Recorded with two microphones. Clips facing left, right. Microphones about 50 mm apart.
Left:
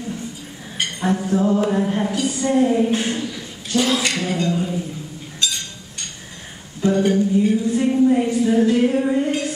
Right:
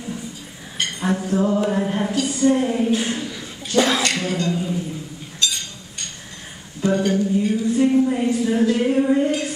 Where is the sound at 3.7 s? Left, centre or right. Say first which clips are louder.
Right 1 dB; right.